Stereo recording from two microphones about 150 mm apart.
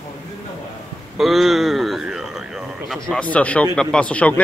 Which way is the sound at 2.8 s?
5° left (ahead or behind).